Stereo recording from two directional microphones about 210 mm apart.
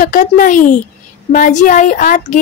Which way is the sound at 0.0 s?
40° left (ahead or behind).